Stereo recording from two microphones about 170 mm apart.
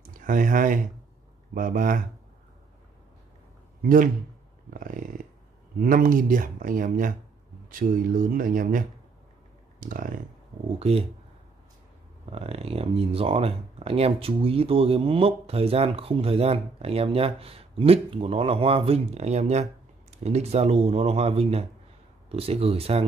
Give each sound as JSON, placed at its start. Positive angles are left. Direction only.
{"t": 0.0, "sound": "speech", "side_deg": -50}
{"t": 3.8, "sound": "speech", "side_deg": -55}
{"t": 4.7, "sound": "a sound", "side_deg": -50}
{"t": 5.8, "sound": "speech", "side_deg": -55}
{"t": 9.8, "sound": "computer keyboard", "side_deg": -55}
{"t": 10.8, "sound": "speech", "side_deg": -35}
{"t": 12.3, "sound": "speech", "side_deg": -35}